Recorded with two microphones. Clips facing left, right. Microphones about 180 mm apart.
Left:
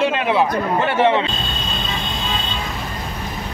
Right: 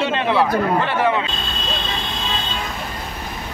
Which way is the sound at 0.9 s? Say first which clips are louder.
Left 7 dB; 25° left (ahead or behind).